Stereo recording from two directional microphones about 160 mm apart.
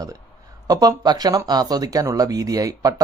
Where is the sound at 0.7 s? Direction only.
25° right (ahead or behind).